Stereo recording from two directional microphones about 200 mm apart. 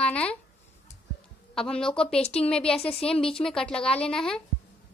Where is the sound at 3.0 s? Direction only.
30° left (ahead or behind).